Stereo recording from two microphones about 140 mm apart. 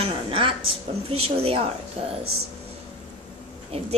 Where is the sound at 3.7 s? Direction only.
45° right (ahead or behind).